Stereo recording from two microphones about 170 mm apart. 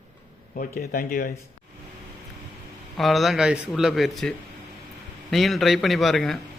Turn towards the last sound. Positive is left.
turn(degrees=0)  # may be behind; listen again after turning